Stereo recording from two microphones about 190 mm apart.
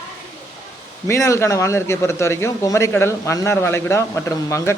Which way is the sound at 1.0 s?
15° left (ahead or behind).